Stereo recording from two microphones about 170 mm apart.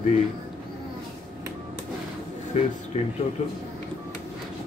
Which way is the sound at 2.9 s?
40° left (ahead or behind).